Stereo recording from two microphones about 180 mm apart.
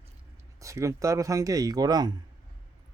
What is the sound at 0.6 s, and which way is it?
Speech, 15° right (ahead or behind).